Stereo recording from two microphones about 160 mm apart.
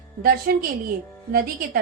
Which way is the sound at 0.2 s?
70° right (ahead or behind).